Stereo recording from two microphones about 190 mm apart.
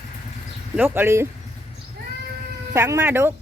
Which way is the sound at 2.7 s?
15° right (ahead or behind).